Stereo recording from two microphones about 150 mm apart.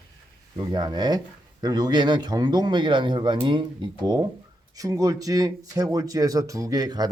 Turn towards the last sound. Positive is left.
turn(degrees=-25)  # may be behind; listen again after turning